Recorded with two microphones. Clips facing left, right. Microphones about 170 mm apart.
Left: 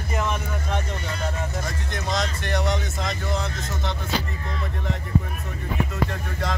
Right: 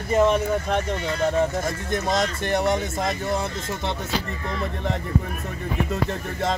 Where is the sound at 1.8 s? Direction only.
50° right (ahead or behind).